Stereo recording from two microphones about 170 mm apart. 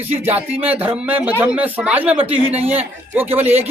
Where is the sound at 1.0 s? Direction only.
10° right (ahead or behind).